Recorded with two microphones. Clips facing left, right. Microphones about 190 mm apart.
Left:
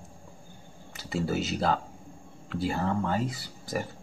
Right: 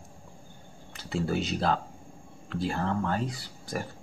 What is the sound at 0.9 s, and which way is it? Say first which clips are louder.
Speech: even; 5° left (ahead or behind).